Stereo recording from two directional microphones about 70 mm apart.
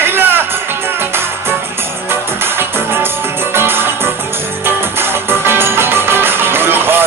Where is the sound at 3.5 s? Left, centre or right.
Right.